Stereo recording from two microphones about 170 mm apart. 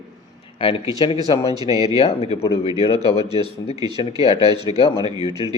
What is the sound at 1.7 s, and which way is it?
Speech, 20° right (ahead or behind).